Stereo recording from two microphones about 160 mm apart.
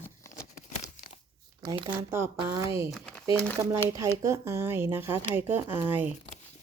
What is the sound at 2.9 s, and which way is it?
Crumpling, 5° left (ahead or behind).